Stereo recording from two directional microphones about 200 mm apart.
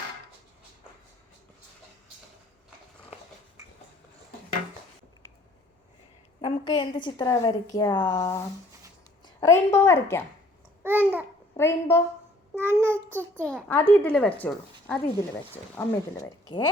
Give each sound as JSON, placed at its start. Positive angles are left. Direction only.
{"t": 6.4, "sound": "a woman's voice", "side_deg": 25}
{"t": 10.8, "sound": "babbling", "side_deg": -10}
{"t": 11.5, "sound": "a woman's voice", "side_deg": 10}
{"t": 12.5, "sound": "child singing", "side_deg": -10}
{"t": 12.9, "sound": "a woman's voice", "side_deg": 10}